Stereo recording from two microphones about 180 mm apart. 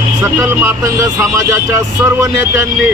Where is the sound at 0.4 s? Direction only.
15° right (ahead or behind).